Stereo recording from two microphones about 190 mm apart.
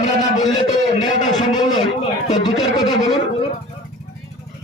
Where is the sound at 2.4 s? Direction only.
20° left (ahead or behind).